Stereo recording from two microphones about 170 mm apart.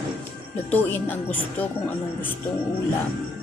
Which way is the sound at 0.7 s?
10° left (ahead or behind).